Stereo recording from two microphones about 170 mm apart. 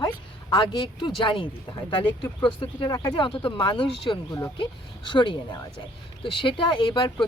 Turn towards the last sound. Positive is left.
turn(degrees=30)  # may be behind; listen again after turning